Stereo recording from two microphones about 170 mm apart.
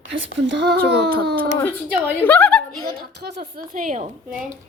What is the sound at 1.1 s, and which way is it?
Speech, 65° right (ahead or behind).